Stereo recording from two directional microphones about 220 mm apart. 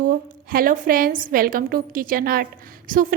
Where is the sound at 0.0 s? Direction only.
40° right (ahead or behind).